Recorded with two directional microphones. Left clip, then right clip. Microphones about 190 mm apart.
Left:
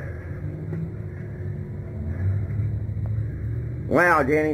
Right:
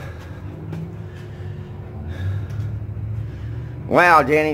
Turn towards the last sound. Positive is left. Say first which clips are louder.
# right 5 dB
turn(degrees=-55)  # may be behind; listen again after turning